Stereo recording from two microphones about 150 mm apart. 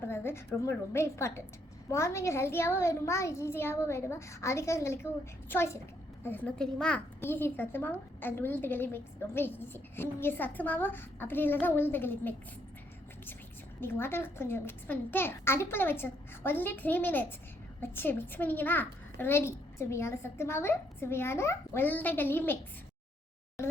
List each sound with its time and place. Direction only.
0.0 s a sound: 15° left (ahead or behind)
0.6 s a woman's voice: 20° left (ahead or behind)
13.8 s a child's voice: 15° left (ahead or behind)